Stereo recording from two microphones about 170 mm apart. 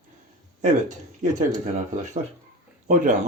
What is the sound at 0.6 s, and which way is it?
Speech, 45° right (ahead or behind).